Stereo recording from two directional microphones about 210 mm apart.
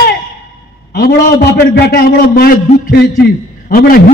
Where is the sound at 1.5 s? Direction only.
45° left (ahead or behind).